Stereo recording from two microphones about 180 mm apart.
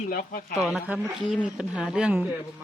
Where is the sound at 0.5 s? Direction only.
Centre (ahead or behind).